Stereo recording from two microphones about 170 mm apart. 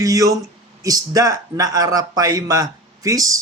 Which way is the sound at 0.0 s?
20° right (ahead or behind).